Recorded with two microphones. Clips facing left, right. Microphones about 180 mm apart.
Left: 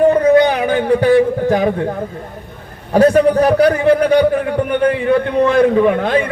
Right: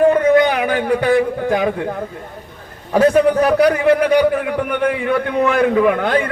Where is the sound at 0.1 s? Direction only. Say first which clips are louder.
Left 2 dB; 30° left (ahead or behind).